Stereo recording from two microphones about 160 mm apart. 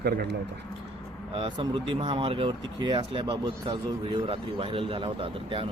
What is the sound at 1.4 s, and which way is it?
Speech, 30° right (ahead or behind).